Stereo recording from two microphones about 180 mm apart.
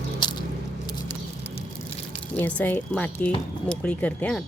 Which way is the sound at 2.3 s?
10° left (ahead or behind).